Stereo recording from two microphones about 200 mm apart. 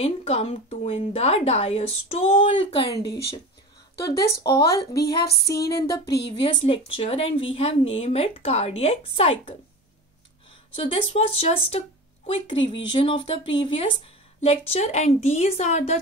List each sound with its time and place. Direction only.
0.0 s a woman's voice: 30° left (ahead or behind)
4.4 s a woman's voice: 20° left (ahead or behind)
4.9 s speech: 55° left (ahead or behind)
5.8 s child singing: 15° left (ahead or behind)
6.2 s a woman's voice: 25° left (ahead or behind)
10.8 s a woman's voice: 25° left (ahead or behind)